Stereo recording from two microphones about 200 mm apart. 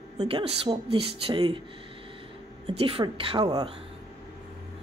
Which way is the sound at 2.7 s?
25° right (ahead or behind).